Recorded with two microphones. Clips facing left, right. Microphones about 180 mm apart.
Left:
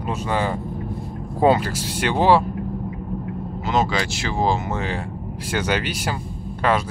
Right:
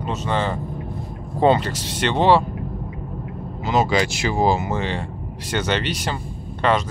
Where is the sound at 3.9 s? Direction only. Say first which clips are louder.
Right 4 dB; 15° right (ahead or behind).